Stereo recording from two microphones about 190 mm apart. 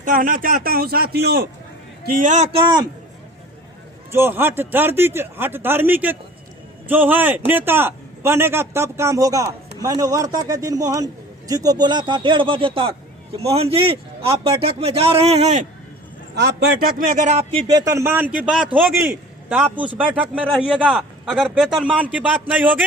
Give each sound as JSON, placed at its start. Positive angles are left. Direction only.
{"t": 0.0, "sound": "a man's voice", "side_deg": -45}
{"t": 2.1, "sound": "a man's voice", "side_deg": -40}
{"t": 4.1, "sound": "a man's voice", "side_deg": -10}
{"t": 16.3, "sound": "a man's voice", "side_deg": -60}